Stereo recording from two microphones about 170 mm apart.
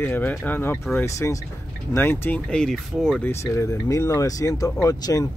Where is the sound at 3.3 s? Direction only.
15° left (ahead or behind).